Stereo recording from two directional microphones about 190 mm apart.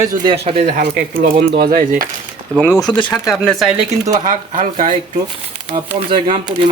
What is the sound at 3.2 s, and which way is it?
Speech, centre (ahead or behind).